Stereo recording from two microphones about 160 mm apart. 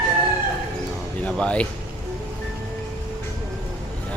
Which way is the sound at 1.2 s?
5° left (ahead or behind).